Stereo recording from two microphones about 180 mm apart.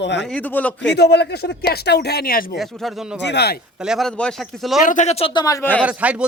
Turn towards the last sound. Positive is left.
turn(degrees=-5)  # may be behind; listen again after turning